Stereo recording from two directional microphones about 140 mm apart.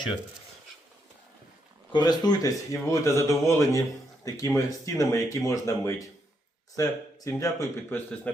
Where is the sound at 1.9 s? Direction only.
30° left (ahead or behind).